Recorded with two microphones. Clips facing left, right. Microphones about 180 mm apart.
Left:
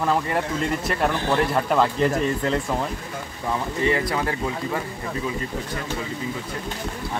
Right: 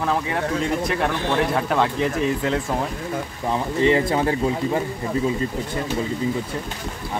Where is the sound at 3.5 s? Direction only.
25° right (ahead or behind).